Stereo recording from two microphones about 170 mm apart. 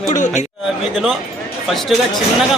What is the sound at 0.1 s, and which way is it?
Speech, 45° left (ahead or behind).